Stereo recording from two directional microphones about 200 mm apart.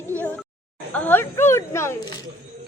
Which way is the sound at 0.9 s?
10° left (ahead or behind).